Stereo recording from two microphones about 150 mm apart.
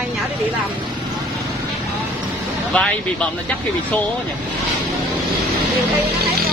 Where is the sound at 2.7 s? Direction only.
5° left (ahead or behind).